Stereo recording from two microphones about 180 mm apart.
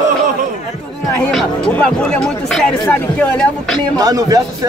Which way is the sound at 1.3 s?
5° left (ahead or behind).